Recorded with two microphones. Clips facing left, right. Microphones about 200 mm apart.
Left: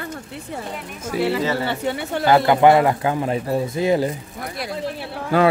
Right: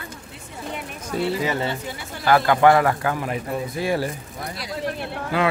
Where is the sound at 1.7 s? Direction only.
70° left (ahead or behind).